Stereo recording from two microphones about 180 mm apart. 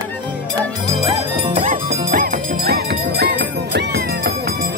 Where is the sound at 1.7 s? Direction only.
55° right (ahead or behind).